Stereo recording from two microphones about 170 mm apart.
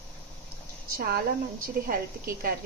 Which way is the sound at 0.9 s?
60° right (ahead or behind).